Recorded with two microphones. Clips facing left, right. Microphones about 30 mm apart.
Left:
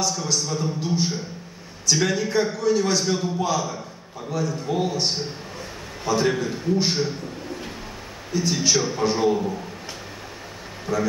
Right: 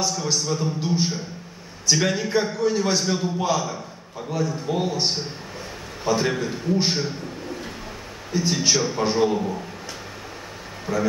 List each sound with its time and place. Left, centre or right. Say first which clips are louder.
0.1 s a man's voice: right 1 dB; centre
6.0 s a man's voice: left 1 dB; centre
10.9 s a man's voice: even; centre